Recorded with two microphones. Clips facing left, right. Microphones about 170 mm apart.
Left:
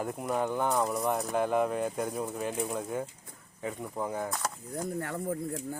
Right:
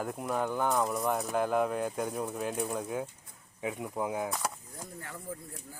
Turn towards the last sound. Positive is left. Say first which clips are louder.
# left 10 dB
turn(degrees=60)  # may be behind; listen again after turning